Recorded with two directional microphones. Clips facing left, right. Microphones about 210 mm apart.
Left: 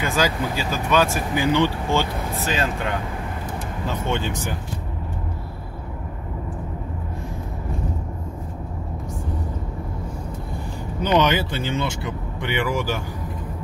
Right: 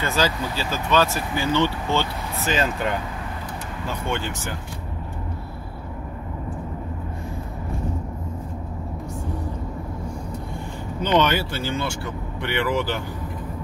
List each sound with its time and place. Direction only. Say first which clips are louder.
0.0 s speech: left 1 dB; 15° left (ahead or behind)
2.3 s speech: right 2 dB; centre (ahead or behind)
4.1 s speech: left 2 dB; 20° left (ahead or behind)
11.0 s speech: left 1 dB; 10° left (ahead or behind)